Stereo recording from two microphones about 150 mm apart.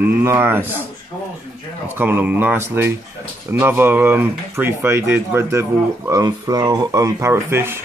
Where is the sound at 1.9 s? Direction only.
15° right (ahead or behind).